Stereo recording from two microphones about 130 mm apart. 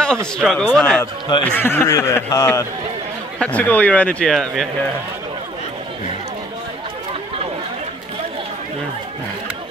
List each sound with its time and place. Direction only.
0.4 s speech: 5° left (ahead or behind); by 2.6 s 20° left (ahead or behind)
3.3 s speech: 10° left (ahead or behind)